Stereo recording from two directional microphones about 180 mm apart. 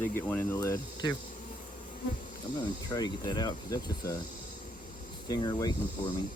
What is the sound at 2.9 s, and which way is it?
Speech, 20° left (ahead or behind).